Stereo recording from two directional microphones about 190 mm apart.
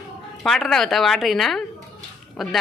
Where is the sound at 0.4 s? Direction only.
Centre (ahead or behind).